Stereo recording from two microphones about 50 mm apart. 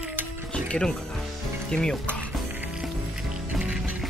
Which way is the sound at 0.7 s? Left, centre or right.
Centre.